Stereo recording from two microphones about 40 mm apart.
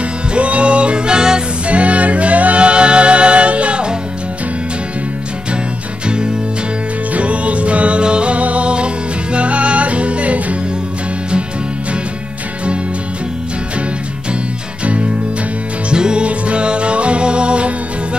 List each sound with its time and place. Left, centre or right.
0.3 s music: right
1.7 s music: right
6.0 s music: right
7.2 s music: right
15.9 s music: right